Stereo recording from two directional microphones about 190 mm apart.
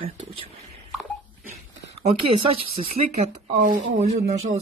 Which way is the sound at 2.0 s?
30° right (ahead or behind).